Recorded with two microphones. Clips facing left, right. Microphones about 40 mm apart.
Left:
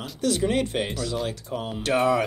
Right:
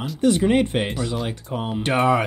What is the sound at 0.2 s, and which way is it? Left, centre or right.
Speech, right.